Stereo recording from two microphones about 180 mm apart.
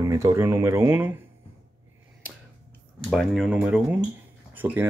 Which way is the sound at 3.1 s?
Centre (ahead or behind).